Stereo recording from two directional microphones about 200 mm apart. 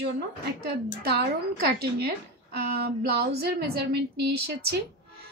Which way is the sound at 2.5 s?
55° right (ahead or behind).